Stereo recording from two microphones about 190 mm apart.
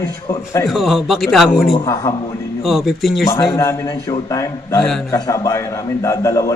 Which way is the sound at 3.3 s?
15° left (ahead or behind).